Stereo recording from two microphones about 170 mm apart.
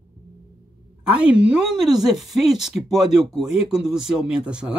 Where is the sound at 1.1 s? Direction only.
5° right (ahead or behind).